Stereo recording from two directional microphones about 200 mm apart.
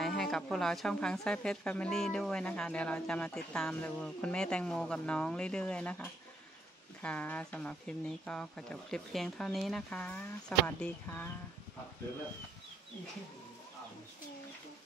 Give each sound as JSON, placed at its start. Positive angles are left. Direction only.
{"t": 0.0, "sound": "a woman's voice", "side_deg": 0}